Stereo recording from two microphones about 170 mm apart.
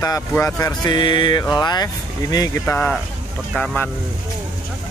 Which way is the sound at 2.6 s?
5° left (ahead or behind).